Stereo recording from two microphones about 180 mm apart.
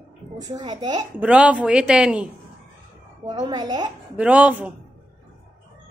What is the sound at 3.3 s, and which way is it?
Speech, 20° right (ahead or behind).